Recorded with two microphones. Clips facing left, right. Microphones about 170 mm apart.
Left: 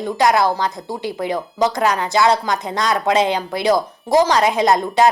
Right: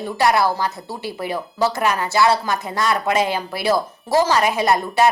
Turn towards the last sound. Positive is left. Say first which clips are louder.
# left 2 dB
turn(degrees=20)  # may be behind; listen again after turning